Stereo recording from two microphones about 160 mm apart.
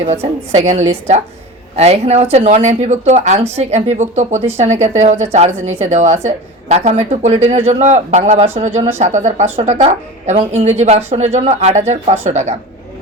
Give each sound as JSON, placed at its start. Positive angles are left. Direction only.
{"t": 0.0, "sound": "speech", "side_deg": -45}